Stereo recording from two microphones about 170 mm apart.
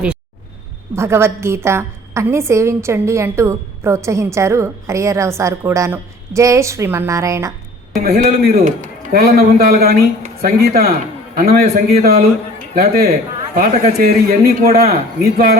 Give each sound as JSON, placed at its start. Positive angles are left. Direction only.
{"t": 0.9, "sound": "a woman's voice", "side_deg": -15}
{"t": 8.0, "sound": "a man's voice", "side_deg": -60}
{"t": 9.2, "sound": "a man's voice", "side_deg": -60}